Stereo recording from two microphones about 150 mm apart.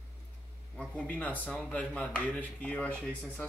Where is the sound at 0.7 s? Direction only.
10° left (ahead or behind).